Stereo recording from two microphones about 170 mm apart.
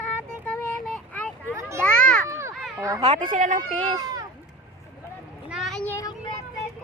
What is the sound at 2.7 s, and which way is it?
Speech, 20° right (ahead or behind).